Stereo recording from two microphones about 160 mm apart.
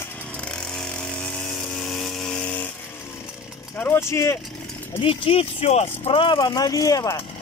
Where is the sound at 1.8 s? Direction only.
Centre (ahead or behind).